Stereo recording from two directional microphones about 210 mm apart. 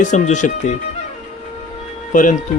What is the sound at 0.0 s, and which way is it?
Speech, 35° left (ahead or behind).